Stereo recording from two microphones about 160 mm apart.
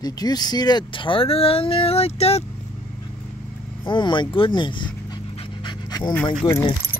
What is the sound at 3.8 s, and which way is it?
Speech, 30° left (ahead or behind).